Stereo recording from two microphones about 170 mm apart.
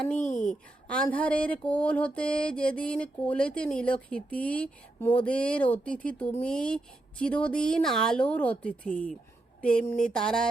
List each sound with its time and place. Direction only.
0.2 s speech: 45° left (ahead or behind)
0.9 s mantra: 5° left (ahead or behind)
9.6 s speech: 5° left (ahead or behind)